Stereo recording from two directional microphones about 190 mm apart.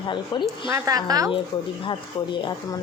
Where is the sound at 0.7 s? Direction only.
20° right (ahead or behind).